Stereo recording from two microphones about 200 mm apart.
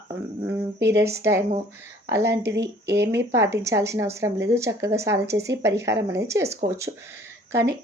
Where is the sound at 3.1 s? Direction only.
15° right (ahead or behind).